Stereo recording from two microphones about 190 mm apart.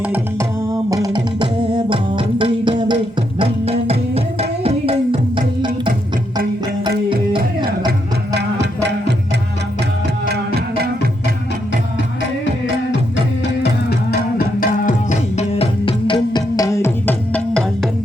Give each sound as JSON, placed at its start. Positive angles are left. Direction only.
{"t": 0.1, "sound": "music", "side_deg": -15}
{"t": 14.1, "sound": "music", "side_deg": 50}